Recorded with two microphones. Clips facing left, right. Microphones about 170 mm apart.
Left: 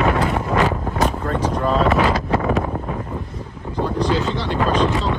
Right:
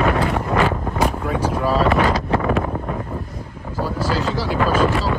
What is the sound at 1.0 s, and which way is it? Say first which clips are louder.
Wind noise: even; 10° right (ahead or behind).